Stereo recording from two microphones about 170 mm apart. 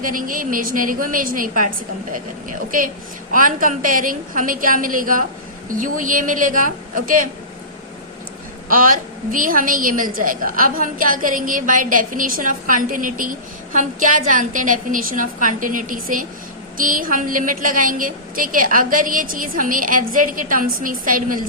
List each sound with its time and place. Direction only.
0.0 s a woman's voice: 55° right (ahead or behind)
8.7 s a woman's voice: 55° right (ahead or behind)